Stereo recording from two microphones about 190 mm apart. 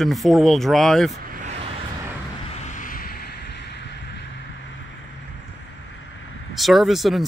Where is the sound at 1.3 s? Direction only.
35° right (ahead or behind).